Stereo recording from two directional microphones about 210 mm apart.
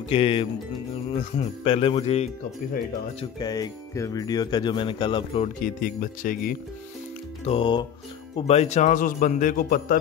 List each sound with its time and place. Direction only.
0.1 s speech: 25° left (ahead or behind)
1.6 s speech: 25° left (ahead or behind)
3.2 s speech: 20° left (ahead or behind)
5.6 s speech: 40° left (ahead or behind)
7.4 s speech: 25° left (ahead or behind); by 9.9 s 45° left (ahead or behind)